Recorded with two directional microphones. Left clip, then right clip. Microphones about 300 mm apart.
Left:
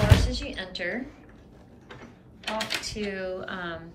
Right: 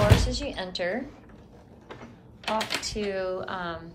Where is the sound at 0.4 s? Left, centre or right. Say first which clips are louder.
Right 2 dB; centre.